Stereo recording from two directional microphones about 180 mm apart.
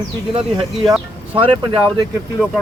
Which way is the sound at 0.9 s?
5° right (ahead or behind).